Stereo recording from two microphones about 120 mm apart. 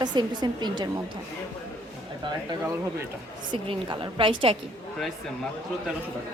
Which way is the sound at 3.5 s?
45° right (ahead or behind).